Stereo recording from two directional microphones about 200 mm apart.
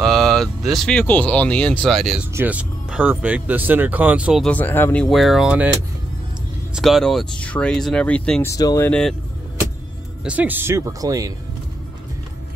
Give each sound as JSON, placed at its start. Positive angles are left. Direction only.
{"t": 0.0, "sound": "speech", "side_deg": 0}
{"t": 6.7, "sound": "speech", "side_deg": 0}
{"t": 10.2, "sound": "speech", "side_deg": -10}